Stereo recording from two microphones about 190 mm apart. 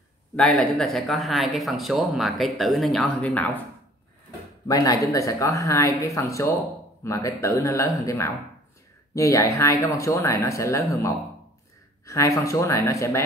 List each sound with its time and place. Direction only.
0.4 s speech: 5° left (ahead or behind)
4.6 s speech: 20° left (ahead or behind)
12.1 s speech: 15° left (ahead or behind)